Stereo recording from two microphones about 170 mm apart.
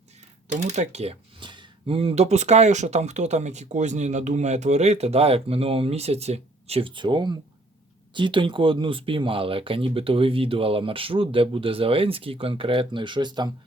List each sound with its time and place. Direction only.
0.4 s speech: 45° right (ahead or behind); by 13.5 s 25° right (ahead or behind)